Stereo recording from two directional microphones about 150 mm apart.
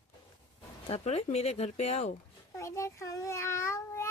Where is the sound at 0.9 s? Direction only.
45° left (ahead or behind).